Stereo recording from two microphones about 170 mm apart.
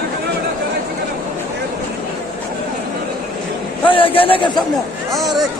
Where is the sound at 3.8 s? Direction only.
30° left (ahead or behind).